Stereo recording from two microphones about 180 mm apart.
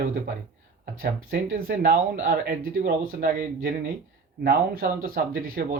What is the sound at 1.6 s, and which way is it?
Speech, 55° right (ahead or behind).